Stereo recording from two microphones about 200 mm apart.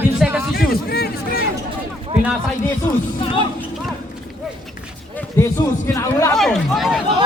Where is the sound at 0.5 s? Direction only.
50° left (ahead or behind).